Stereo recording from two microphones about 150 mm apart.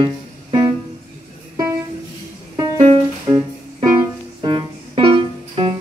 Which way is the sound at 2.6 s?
25° right (ahead or behind).